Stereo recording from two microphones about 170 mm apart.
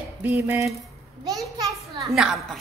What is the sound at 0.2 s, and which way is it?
Speech, 10° right (ahead or behind).